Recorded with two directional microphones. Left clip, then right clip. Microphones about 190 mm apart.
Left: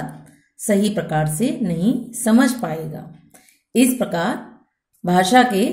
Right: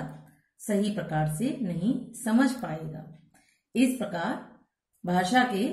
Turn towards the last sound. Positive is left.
turn(degrees=45)  # may be behind; listen again after turning